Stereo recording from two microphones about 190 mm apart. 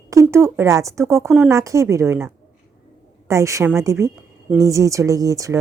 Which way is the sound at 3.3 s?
15° right (ahead or behind).